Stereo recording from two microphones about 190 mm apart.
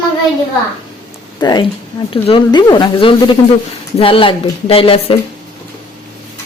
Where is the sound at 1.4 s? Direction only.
20° left (ahead or behind).